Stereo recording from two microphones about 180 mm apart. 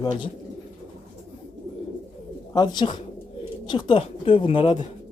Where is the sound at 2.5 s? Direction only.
25° left (ahead or behind).